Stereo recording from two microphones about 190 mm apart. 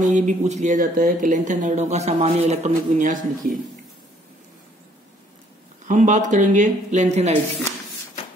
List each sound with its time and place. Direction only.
0.0 s speech: 40° right (ahead or behind)
5.9 s speech: 40° right (ahead or behind)